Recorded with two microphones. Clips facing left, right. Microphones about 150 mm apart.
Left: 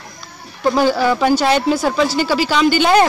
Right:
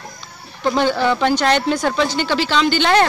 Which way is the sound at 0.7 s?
10° left (ahead or behind).